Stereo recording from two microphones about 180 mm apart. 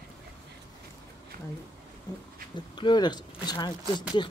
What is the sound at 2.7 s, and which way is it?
Speech, 25° left (ahead or behind).